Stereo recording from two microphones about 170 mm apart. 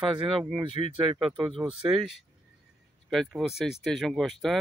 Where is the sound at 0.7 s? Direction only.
30° right (ahead or behind).